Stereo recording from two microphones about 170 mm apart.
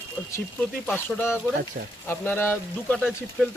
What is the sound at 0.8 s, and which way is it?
Speech, 10° left (ahead or behind).